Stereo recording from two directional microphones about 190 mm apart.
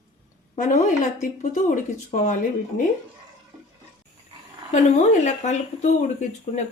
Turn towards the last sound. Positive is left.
turn(degrees=35)  # may be behind; listen again after turning